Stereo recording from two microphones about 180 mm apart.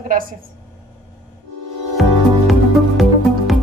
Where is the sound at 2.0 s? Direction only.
Centre (ahead or behind).